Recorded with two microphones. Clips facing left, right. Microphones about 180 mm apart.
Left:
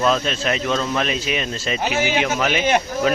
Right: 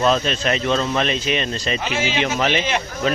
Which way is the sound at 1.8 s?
45° left (ahead or behind).